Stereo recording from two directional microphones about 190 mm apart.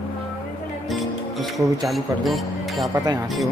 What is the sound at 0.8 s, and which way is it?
Music, centre (ahead or behind).